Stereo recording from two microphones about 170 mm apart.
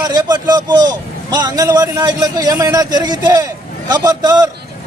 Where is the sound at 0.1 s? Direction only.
25° right (ahead or behind).